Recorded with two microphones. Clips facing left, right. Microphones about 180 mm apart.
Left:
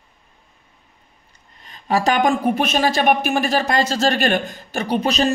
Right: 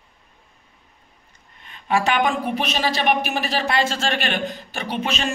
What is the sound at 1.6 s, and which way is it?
Speech, 35° left (ahead or behind).